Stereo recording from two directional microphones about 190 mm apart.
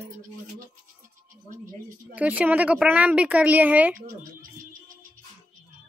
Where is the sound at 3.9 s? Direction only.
45° right (ahead or behind).